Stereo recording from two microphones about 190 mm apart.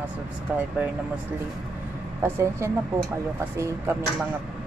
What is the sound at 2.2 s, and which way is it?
Speech, 15° right (ahead or behind).